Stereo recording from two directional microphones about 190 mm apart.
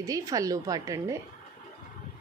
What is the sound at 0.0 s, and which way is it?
A woman's voice, 20° right (ahead or behind).